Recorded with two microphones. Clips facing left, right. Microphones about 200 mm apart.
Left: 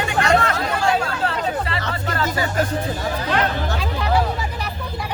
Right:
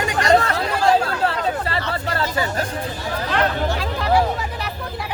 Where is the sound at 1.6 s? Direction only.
35° right (ahead or behind).